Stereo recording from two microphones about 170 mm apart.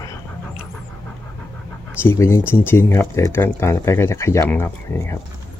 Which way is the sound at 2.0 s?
15° left (ahead or behind).